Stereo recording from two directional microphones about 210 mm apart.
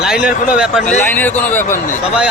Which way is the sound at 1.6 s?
40° left (ahead or behind).